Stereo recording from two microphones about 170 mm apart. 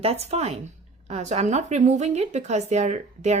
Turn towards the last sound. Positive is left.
turn(degrees=-45)  # may be behind; listen again after turning